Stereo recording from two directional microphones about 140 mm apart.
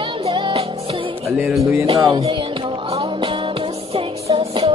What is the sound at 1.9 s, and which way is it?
Music, 35° right (ahead or behind).